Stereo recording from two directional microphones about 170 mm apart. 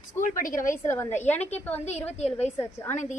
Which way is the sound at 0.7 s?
15° left (ahead or behind).